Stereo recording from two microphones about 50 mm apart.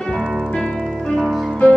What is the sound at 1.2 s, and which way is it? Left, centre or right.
Music, centre.